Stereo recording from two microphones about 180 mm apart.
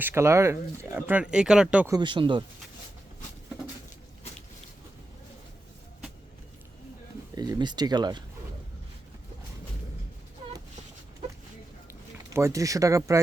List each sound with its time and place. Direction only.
0.0 s speech: 15° right (ahead or behind)
1.9 s speech: 25° right (ahead or behind)
7.3 s speech: 25° right (ahead or behind)
12.3 s speech: 15° right (ahead or behind)